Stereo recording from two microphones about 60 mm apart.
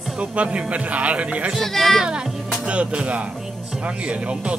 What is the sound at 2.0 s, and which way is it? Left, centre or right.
Speech, centre.